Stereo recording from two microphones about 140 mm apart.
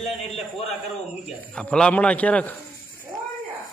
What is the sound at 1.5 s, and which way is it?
A man's voice, 5° left (ahead or behind).